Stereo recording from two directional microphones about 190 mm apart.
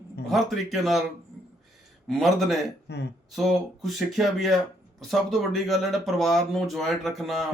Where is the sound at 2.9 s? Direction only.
60° left (ahead or behind).